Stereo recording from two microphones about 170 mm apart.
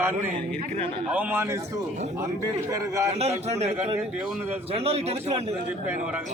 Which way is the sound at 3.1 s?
40° right (ahead or behind).